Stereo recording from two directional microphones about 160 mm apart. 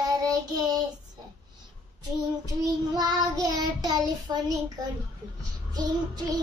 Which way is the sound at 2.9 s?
25° right (ahead or behind).